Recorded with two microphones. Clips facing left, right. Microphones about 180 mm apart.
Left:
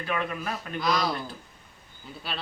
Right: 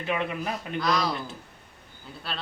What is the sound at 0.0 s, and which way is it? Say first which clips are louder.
Speech: right 2 dB; 20° right (ahead or behind).